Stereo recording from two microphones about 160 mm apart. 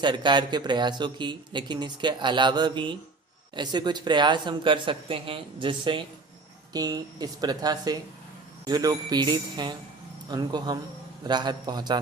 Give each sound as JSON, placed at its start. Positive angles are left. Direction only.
{"t": 0.0, "sound": "speech", "side_deg": -30}